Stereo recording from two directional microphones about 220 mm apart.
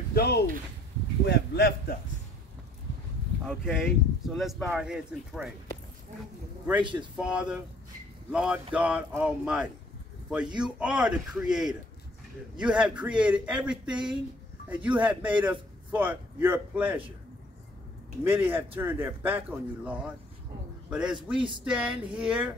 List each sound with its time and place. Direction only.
0.1 s speech: 45° left (ahead or behind)
3.4 s speech: 5° right (ahead or behind)
6.8 s speech: 20° right (ahead or behind)
7.2 s speech: 5° right (ahead or behind)
18.2 s speech: 10° right (ahead or behind)